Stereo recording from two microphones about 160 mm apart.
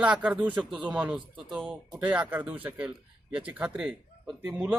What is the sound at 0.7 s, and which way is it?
Speech, 30° right (ahead or behind).